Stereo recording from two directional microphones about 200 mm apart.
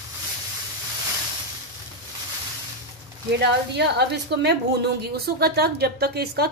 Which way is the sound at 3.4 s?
55° right (ahead or behind).